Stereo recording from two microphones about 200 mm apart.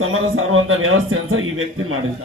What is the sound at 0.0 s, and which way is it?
A man's voice, 90° right.